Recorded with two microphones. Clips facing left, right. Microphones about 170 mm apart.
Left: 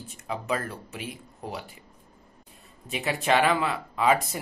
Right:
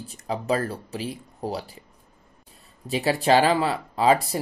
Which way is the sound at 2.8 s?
35° right (ahead or behind).